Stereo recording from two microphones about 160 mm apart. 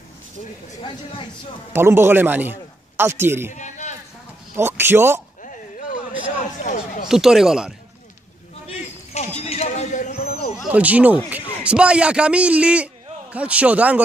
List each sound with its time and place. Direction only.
0.8 s speech: 30° left (ahead or behind)
1.7 s a man's voice: 15° right (ahead or behind)
3.5 s a sound: 50° left (ahead or behind)
4.6 s a man's voice: 15° right (ahead or behind)
7.1 s speech: centre (ahead or behind)
8.6 s a sound: 45° left (ahead or behind)
10.6 s a man's voice: 10° right (ahead or behind)